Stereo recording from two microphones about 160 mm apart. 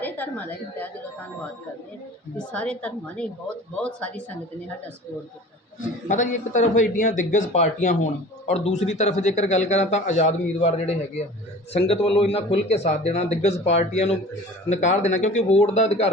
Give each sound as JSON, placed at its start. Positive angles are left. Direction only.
{"t": 0.0, "sound": "a woman's voice", "side_deg": 10}
{"t": 2.5, "sound": "a woman's voice", "side_deg": 10}
{"t": 6.1, "sound": "speech", "side_deg": 50}